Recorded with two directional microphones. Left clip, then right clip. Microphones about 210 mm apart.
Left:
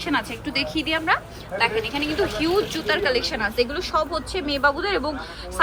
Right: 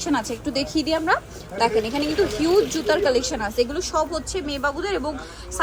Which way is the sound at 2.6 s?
25° right (ahead or behind).